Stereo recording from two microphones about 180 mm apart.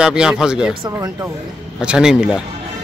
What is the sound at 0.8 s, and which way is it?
Speech, 20° right (ahead or behind).